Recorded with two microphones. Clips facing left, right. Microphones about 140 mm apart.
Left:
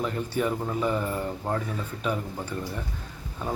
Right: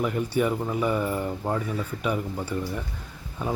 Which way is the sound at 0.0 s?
10° right (ahead or behind).